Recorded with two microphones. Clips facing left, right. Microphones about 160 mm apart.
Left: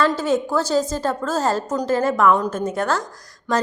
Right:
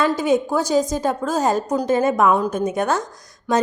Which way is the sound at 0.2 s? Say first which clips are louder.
Right 2 dB; 15° right (ahead or behind).